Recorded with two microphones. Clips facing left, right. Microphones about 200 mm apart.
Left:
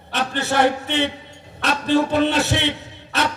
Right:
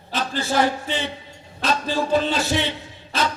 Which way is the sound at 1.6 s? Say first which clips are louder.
Left 4 dB; 65° left (ahead or behind).